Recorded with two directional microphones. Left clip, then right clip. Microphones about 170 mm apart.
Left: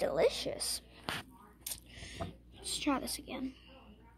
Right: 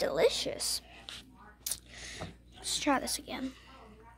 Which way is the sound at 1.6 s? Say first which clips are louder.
Right 5 dB; 10° right (ahead or behind).